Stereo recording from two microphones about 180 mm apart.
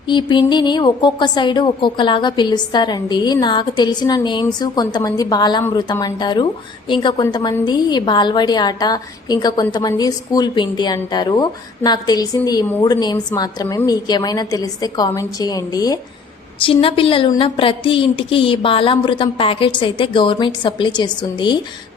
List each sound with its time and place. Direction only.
0.1 s a woman's voice: 25° left (ahead or behind)